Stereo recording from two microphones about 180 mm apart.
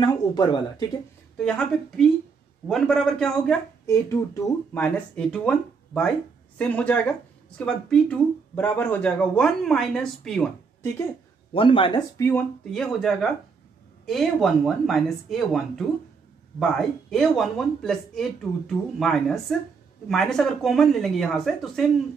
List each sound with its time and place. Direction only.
0.0 s speech: 20° left (ahead or behind)
1.4 s speech: 5° left (ahead or behind)
3.8 s speech: 15° left (ahead or behind)
11.5 s speech: 30° left (ahead or behind)
12.2 s speech: 10° left (ahead or behind)